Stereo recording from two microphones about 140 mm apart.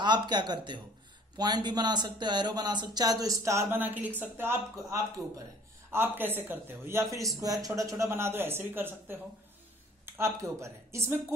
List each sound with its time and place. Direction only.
0.0 s a man's voice: 30° right (ahead or behind)